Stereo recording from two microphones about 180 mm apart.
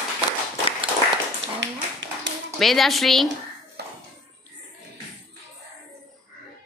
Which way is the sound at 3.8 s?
65° right (ahead or behind).